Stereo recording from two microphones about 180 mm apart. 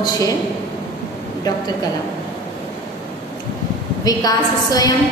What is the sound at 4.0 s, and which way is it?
Speech, 20° left (ahead or behind).